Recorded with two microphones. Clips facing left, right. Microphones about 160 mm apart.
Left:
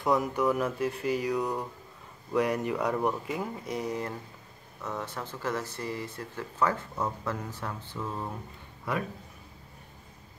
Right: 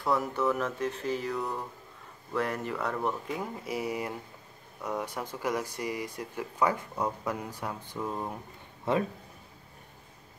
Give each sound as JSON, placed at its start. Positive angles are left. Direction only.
{"t": 0.0, "sound": "speech", "side_deg": 15}
{"t": 3.3, "sound": "a man's voice", "side_deg": -5}